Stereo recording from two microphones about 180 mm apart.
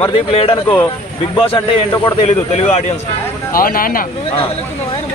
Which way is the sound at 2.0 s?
35° left (ahead or behind).